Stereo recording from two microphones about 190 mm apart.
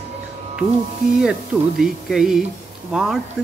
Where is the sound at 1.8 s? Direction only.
Centre (ahead or behind).